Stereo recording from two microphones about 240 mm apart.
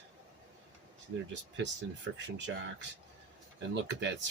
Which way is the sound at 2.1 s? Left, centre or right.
Right.